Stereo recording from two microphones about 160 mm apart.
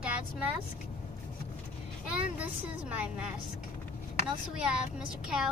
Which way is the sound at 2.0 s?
10° right (ahead or behind).